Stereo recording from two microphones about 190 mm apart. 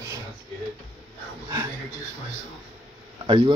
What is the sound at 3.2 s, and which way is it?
Speech, 25° right (ahead or behind).